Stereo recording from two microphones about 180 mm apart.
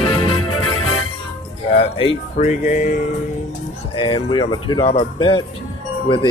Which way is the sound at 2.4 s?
45° left (ahead or behind).